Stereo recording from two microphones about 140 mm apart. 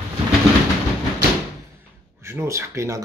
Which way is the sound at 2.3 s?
20° right (ahead or behind).